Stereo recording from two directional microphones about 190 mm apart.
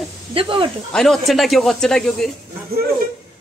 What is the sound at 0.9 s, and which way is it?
A man's voice, centre (ahead or behind).